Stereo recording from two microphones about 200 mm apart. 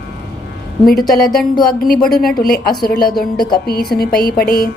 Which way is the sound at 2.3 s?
50° left (ahead or behind).